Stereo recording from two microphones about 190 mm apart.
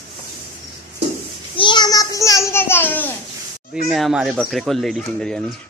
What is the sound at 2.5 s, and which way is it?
Speech, 10° left (ahead or behind).